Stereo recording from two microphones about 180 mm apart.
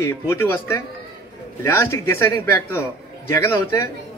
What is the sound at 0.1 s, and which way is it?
A man's voice, 15° left (ahead or behind).